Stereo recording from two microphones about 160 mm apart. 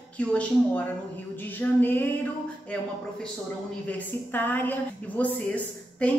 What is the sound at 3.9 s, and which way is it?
A woman's voice, 10° left (ahead or behind).